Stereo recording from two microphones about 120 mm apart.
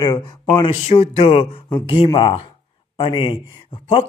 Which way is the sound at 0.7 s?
55° left (ahead or behind).